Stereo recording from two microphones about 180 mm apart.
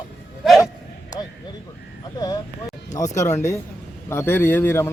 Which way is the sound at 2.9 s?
15° left (ahead or behind).